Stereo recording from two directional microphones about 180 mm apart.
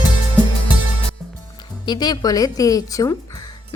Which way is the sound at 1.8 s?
25° left (ahead or behind).